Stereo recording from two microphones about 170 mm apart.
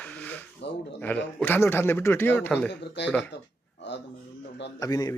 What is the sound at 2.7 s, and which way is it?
Speech, 90° left.